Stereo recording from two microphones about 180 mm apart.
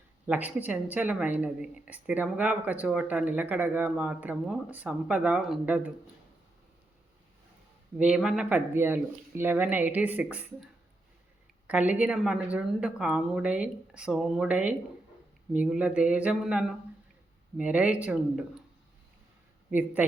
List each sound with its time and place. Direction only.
0.3 s speech: 10° right (ahead or behind)
7.9 s speech: 5° right (ahead or behind)
11.7 s speech: 10° right (ahead or behind)
19.7 s speech: 10° right (ahead or behind)